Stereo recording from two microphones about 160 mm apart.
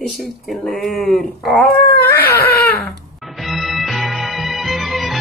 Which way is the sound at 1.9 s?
80° left.